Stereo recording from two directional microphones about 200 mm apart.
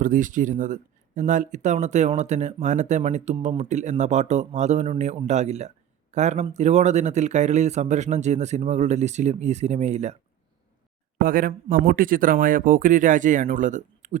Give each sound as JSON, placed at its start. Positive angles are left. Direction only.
{"t": 0.0, "sound": "speech", "side_deg": -40}
{"t": 11.2, "sound": "speech", "side_deg": -45}